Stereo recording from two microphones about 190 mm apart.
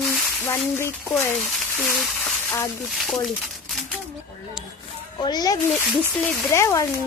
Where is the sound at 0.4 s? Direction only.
15° left (ahead or behind).